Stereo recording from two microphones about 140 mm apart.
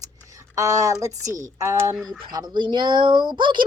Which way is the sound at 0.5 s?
25° right (ahead or behind).